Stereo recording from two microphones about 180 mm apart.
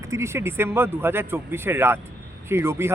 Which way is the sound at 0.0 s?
15° right (ahead or behind).